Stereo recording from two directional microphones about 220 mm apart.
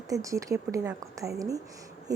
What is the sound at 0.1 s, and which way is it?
A woman's voice, 15° right (ahead or behind).